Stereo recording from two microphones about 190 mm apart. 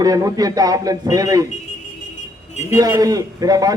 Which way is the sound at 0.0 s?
20° right (ahead or behind).